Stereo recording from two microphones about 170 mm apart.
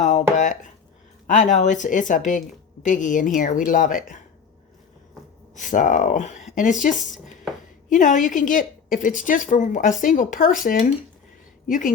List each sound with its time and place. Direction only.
0.0 s a sound: 45° left (ahead or behind)
1.3 s a woman's voice: 45° left (ahead or behind)
5.5 s a woman's voice: 50° left (ahead or behind)
7.9 s a woman's voice: 50° left (ahead or behind)